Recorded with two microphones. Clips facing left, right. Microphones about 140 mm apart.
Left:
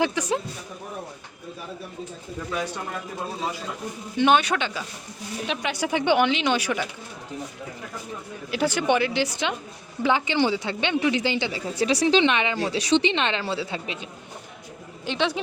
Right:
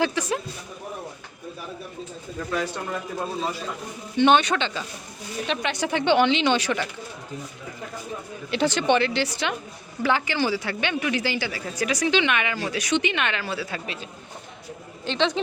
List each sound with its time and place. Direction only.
0.0 s speech: 15° left (ahead or behind)
4.2 s speech: 5° left (ahead or behind)
8.4 s speech: 5° left (ahead or behind)